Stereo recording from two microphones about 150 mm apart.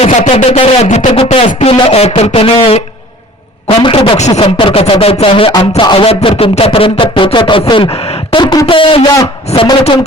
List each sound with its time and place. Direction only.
0.0 s speech: 45° left (ahead or behind)
0.9 s music: 40° left (ahead or behind)
1.5 s speech: 45° left (ahead or behind)
4.2 s speech: 50° left (ahead or behind)